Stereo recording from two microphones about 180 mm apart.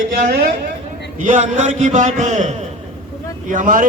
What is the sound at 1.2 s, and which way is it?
A man's voice, 45° right (ahead or behind).